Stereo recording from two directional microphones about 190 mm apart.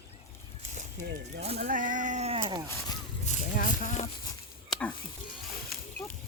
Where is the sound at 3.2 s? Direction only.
45° left (ahead or behind).